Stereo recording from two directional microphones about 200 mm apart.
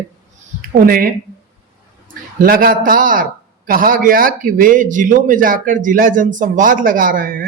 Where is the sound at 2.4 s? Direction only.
45° right (ahead or behind).